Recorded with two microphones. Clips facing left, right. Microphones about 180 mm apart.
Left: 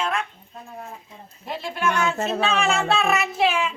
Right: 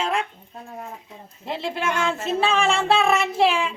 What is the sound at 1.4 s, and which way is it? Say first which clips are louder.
Speech: even; 25° right (ahead or behind).